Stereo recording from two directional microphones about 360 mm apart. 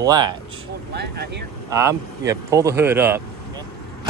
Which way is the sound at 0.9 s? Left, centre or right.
Right.